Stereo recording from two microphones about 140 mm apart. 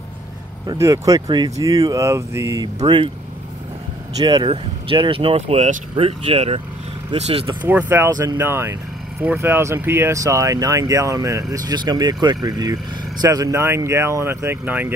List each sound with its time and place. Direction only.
0.7 s speech: 20° right (ahead or behind)
4.2 s speech: 30° right (ahead or behind)
7.6 s speech: 15° right (ahead or behind)